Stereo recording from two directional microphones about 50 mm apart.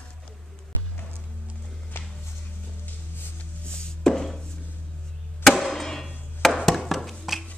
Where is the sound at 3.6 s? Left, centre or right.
Centre.